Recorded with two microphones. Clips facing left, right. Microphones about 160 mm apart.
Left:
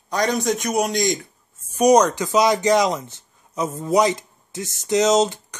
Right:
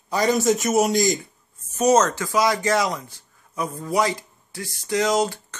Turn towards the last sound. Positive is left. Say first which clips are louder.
# left 4 dB
turn(degrees=20)  # may be behind; listen again after turning